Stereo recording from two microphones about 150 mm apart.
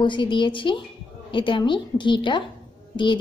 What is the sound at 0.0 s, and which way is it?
A woman's voice, 30° left (ahead or behind).